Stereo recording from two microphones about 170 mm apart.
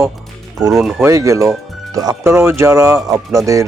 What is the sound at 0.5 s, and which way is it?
Speech, 20° right (ahead or behind).